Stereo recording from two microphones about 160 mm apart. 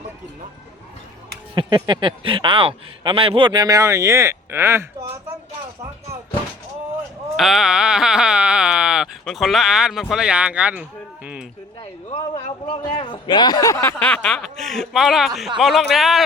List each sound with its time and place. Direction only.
1.5 s a man's voice: 30° right (ahead or behind)
7.3 s speech: centre (ahead or behind)
11.8 s a man's voice: 35° left (ahead or behind)
14.0 s speech: 5° left (ahead or behind)